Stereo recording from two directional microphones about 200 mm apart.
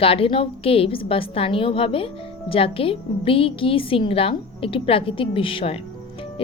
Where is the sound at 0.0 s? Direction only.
30° left (ahead or behind).